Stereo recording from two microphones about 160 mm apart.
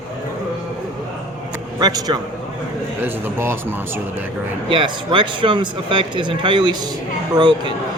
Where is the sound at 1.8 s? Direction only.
25° right (ahead or behind).